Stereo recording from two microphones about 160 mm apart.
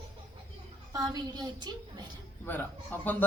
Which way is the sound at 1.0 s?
25° right (ahead or behind).